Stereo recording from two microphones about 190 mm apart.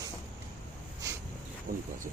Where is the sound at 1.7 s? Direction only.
50° right (ahead or behind).